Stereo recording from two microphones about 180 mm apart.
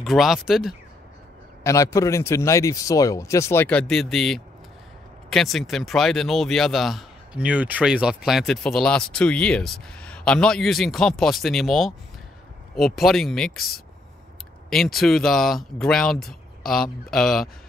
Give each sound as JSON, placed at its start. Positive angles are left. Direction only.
{"t": 0.0, "sound": "speech", "side_deg": 0}
{"t": 1.6, "sound": "speech", "side_deg": 20}
{"t": 14.7, "sound": "speech", "side_deg": 0}